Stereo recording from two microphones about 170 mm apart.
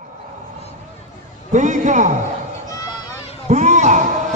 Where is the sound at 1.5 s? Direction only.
45° right (ahead or behind).